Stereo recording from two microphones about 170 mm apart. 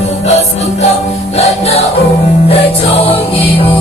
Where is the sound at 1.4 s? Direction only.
40° left (ahead or behind).